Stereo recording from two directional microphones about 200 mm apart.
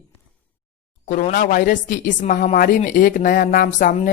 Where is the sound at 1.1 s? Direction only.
40° left (ahead or behind).